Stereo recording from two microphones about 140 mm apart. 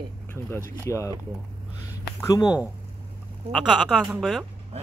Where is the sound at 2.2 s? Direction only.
25° left (ahead or behind).